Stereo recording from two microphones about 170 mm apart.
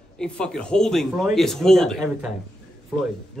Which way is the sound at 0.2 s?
5° left (ahead or behind).